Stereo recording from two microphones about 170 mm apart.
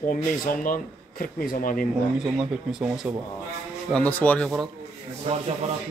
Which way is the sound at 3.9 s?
10° left (ahead or behind).